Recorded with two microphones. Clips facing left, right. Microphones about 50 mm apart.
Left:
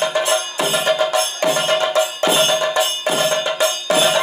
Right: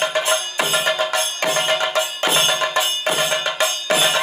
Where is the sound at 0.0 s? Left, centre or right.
Centre.